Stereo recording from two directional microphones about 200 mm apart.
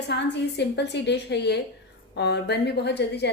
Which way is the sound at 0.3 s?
60° left (ahead or behind).